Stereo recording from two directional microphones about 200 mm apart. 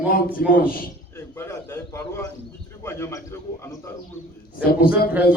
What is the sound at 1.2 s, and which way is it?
A man's voice, 15° left (ahead or behind).